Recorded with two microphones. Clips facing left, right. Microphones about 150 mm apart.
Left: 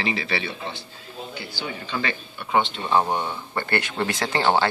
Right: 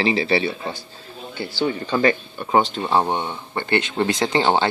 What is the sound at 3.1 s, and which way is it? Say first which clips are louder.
Speech: right 1 dB; 20° right (ahead or behind).